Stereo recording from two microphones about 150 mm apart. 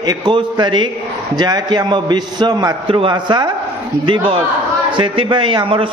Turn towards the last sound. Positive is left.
turn(degrees=-35)  # may be behind; listen again after turning